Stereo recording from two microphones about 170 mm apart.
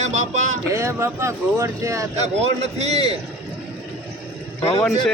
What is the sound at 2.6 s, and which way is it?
Speech, 40° right (ahead or behind).